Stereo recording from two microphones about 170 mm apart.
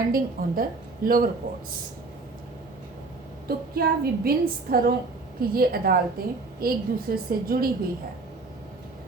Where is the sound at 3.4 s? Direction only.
65° right (ahead or behind).